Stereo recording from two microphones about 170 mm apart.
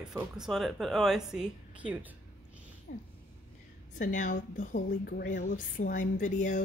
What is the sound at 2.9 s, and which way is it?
Speech, 60° left (ahead or behind).